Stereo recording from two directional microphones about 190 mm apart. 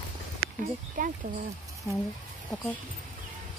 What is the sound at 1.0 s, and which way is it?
Speech, 45° right (ahead or behind).